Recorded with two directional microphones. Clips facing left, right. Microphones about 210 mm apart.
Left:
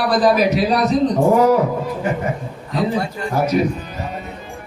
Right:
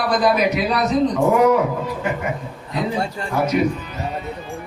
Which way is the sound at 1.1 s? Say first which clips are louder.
Left 2 dB; 35° left (ahead or behind).